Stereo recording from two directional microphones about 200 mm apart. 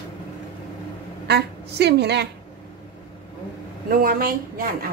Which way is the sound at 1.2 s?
55° right (ahead or behind).